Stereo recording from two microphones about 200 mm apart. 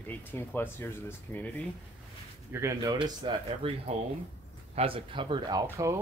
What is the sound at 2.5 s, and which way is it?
Speech, 15° right (ahead or behind).